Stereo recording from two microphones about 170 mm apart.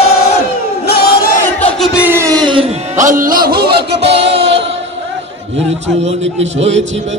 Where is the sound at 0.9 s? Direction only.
65° left (ahead or behind).